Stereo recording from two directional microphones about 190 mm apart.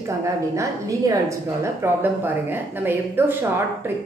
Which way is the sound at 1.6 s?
10° right (ahead or behind).